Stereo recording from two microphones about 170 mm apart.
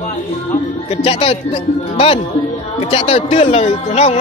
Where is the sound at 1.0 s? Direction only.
35° left (ahead or behind).